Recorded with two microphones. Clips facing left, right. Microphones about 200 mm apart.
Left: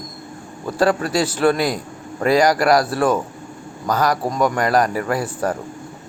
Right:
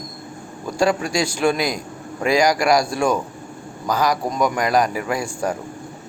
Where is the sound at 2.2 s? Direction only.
10° right (ahead or behind).